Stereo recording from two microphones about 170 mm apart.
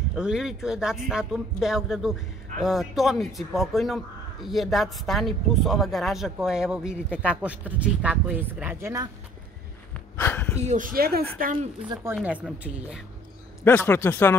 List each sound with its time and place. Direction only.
0.1 s speech: 5° right (ahead or behind)
10.1 s speech: 10° left (ahead or behind)
10.6 s speech: 45° right (ahead or behind); by 11.2 s 65° right (ahead or behind)
11.9 s a woman's voice: 15° right (ahead or behind)
13.7 s a man's voice: 10° left (ahead or behind)